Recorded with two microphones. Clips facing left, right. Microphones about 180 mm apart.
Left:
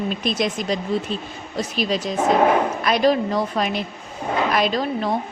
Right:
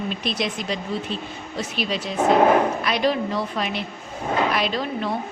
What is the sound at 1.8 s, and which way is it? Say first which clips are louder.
A woman's voice: left 2 dB; 40° left (ahead or behind).